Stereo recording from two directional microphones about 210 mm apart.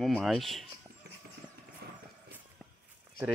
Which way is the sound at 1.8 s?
50° right (ahead or behind).